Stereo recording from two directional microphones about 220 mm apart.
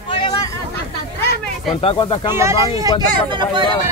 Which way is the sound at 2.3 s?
15° right (ahead or behind).